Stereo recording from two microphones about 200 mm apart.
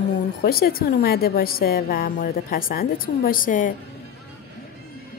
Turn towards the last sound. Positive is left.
turn(degrees=40)  # may be behind; listen again after turning